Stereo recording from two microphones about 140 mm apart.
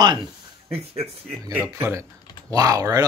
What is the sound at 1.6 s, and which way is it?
Speech, 15° right (ahead or behind).